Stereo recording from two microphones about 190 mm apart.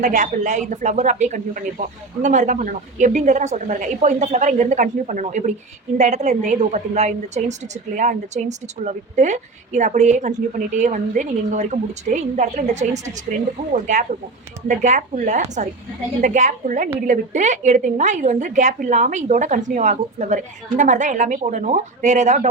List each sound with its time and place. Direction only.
0.0 s a woman's voice: 40° right (ahead or behind)